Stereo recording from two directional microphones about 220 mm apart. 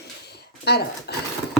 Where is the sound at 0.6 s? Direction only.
45° left (ahead or behind).